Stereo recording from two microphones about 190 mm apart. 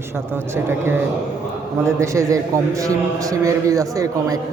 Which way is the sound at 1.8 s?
15° right (ahead or behind).